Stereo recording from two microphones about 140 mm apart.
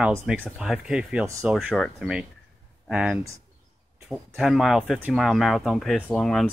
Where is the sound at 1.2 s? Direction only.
20° right (ahead or behind).